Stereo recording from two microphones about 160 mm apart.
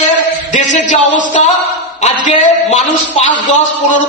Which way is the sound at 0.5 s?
50° left (ahead or behind).